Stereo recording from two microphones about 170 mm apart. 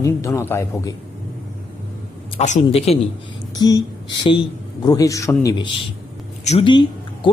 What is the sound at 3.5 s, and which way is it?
Speech, 20° left (ahead or behind).